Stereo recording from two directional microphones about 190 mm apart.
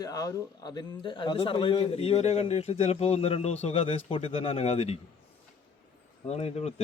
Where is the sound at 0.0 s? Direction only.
20° left (ahead or behind); by 4.9 s 35° left (ahead or behind).